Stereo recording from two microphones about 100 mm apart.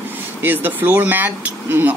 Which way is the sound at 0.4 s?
20° right (ahead or behind).